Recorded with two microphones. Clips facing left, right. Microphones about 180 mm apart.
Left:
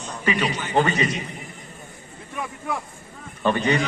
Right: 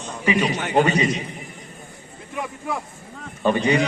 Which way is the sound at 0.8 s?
20° right (ahead or behind).